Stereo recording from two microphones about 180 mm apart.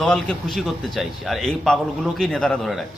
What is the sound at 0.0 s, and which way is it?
A man's voice, centre (ahead or behind).